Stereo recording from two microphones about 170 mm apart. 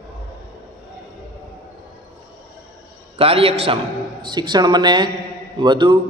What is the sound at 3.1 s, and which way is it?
A man's voice, 35° right (ahead or behind).